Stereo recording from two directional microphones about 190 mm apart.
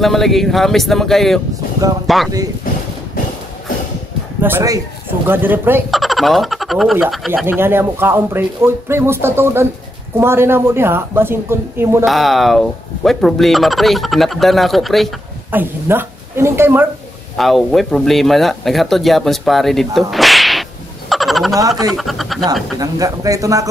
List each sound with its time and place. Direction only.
0.0 s speech: centre (ahead or behind)
4.4 s a man's voice: 10° right (ahead or behind)
5.9 s speech: centre (ahead or behind)
12.0 s speech: centre (ahead or behind)
15.5 s speech: 10° right (ahead or behind)
17.4 s speech: centre (ahead or behind)
21.1 s frog: centre (ahead or behind)
21.5 s speech: 20° right (ahead or behind)
21.9 s speech: centre (ahead or behind)
22.8 s speech: 20° right (ahead or behind)